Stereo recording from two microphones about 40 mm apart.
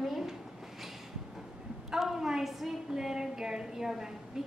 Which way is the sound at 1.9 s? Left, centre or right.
Centre.